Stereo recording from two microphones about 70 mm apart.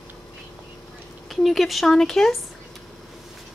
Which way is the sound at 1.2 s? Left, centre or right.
Centre.